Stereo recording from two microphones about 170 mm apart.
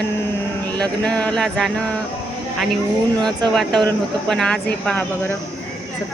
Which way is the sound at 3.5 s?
Centre (ahead or behind).